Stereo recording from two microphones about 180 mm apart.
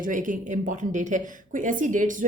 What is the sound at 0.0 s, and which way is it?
A woman's voice, 45° right (ahead or behind).